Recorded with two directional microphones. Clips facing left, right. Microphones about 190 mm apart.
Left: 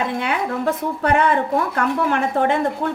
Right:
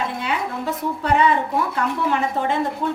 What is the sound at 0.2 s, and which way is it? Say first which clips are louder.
A woman's voice: left 3 dB; 55° left (ahead or behind).